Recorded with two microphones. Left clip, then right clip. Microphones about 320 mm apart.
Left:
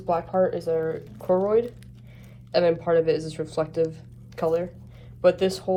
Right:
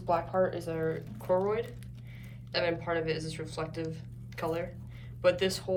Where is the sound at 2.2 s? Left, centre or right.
Centre.